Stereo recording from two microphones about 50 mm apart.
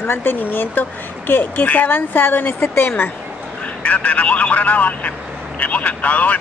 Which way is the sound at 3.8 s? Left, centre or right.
Left.